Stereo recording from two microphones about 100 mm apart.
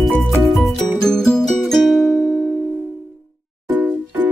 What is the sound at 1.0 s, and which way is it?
Music, 5° left (ahead or behind).